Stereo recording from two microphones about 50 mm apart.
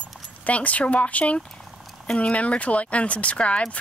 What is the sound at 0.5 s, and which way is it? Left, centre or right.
Speech, left.